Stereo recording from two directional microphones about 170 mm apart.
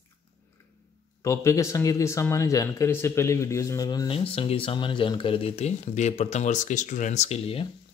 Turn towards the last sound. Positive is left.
turn(degrees=35)  # may be behind; listen again after turning